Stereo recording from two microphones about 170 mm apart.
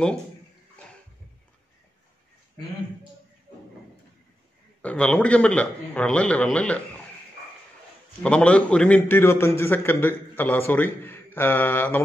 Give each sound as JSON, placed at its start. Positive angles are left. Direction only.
{"t": 4.8, "sound": "a man's voice", "side_deg": 5}
{"t": 8.2, "sound": "a man's voice", "side_deg": 5}